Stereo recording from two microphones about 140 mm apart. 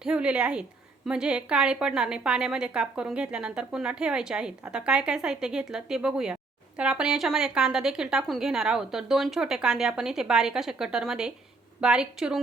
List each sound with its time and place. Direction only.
0.0 s a woman's voice: 5° right (ahead or behind)